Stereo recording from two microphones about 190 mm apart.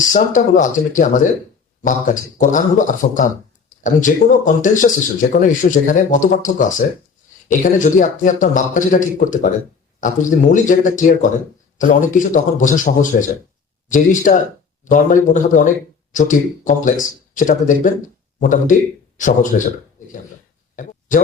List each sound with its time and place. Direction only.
0.1 s speech: 45° left (ahead or behind)
2.4 s a man's voice: 40° left (ahead or behind)